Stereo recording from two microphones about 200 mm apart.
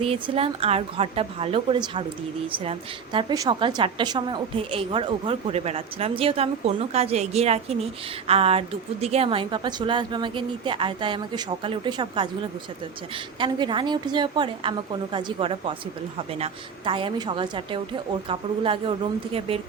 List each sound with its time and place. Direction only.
0.0 s a woman's voice: 30° right (ahead or behind)
13.4 s a woman's voice: 25° right (ahead or behind)